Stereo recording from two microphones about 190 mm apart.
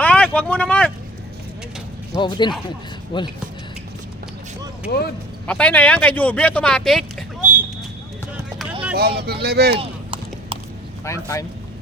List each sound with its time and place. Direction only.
0.0 s vehicle: 5° left (ahead or behind)
2.1 s a man's voice: 25° left (ahead or behind)
4.9 s speech: 55° left (ahead or behind)
5.5 s speech: 5° left (ahead or behind)
7.4 s a sound: 10° right (ahead or behind)
9.2 s speech: 55° right (ahead or behind)
9.7 s clip-clop: 30° right (ahead or behind)
11.0 s speech: 15° left (ahead or behind)